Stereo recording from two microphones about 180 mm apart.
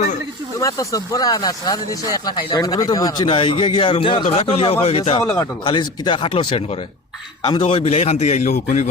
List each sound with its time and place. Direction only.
0.6 s speech: 20° left (ahead or behind); by 5.2 s 35° left (ahead or behind)
5.4 s a man's voice: 25° left (ahead or behind); by 8.9 s 45° left (ahead or behind)